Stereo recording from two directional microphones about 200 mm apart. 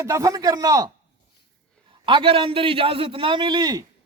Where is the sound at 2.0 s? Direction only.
25° right (ahead or behind).